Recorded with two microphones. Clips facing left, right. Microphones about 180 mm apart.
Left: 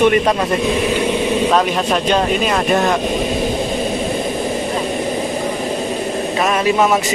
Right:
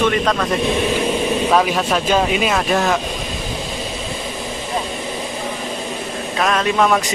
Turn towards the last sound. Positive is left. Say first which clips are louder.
# left 2 dB
turn(degrees=5)  # may be behind; listen again after turning